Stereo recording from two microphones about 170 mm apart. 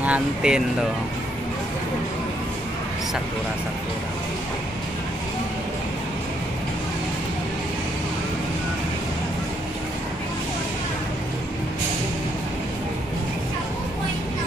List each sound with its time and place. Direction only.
0.0 s speech: 5° right (ahead or behind)